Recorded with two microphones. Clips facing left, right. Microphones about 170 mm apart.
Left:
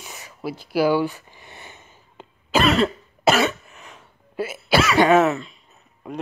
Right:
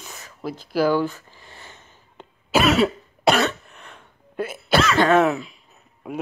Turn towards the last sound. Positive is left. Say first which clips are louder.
# right 2 dB
turn(degrees=-5)  # may be behind; listen again after turning